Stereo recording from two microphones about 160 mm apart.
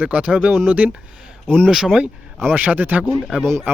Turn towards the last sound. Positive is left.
turn(degrees=0)  # may be behind; listen again after turning